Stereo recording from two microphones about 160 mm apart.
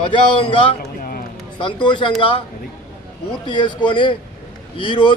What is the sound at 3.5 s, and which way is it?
A man's voice, 30° left (ahead or behind).